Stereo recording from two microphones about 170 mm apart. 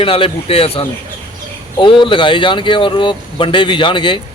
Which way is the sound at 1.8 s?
30° left (ahead or behind).